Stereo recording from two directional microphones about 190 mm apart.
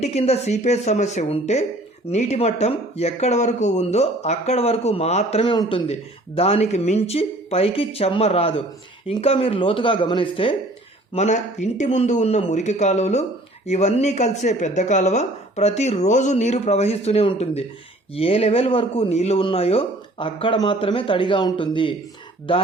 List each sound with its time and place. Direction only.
0.0 s a man's voice: 35° left (ahead or behind)